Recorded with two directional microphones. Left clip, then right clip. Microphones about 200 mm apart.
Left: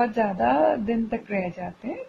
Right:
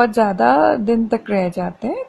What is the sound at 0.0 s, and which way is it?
A woman's voice, 40° right (ahead or behind).